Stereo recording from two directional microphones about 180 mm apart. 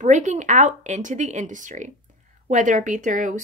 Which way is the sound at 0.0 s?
40° right (ahead or behind).